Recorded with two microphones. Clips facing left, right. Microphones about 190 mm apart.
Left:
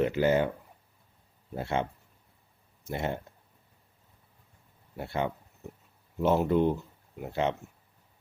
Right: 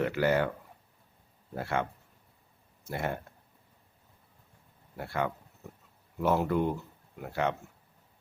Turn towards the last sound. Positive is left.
turn(degrees=20)  # may be behind; listen again after turning